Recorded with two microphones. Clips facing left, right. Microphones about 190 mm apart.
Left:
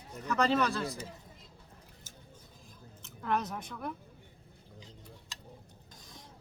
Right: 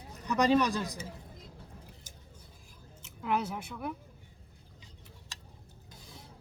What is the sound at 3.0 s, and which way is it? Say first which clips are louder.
Speech: right 1 dB; 10° right (ahead or behind).